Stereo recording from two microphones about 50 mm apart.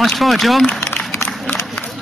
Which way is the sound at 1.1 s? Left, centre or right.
Left.